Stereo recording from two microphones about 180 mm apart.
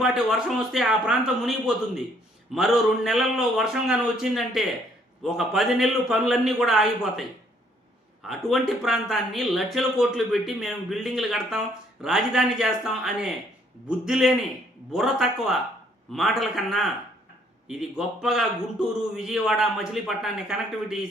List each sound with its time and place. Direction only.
0.0 s a man's voice: 5° right (ahead or behind)
8.3 s a man's voice: centre (ahead or behind)